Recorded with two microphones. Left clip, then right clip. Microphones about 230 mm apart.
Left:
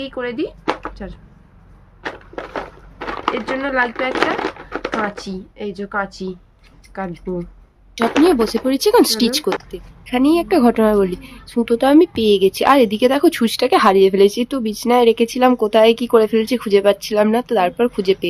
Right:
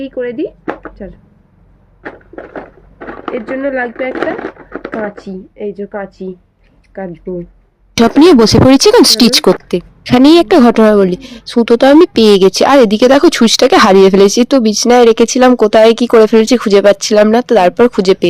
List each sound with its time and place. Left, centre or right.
0.0 s speech: centre
2.0 s a sound: centre
3.6 s speech: centre
4.1 s a sound: centre
5.2 s speech: centre
7.9 s a woman's voice: right